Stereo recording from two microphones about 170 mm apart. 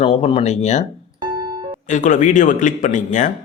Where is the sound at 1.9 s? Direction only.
45° left (ahead or behind).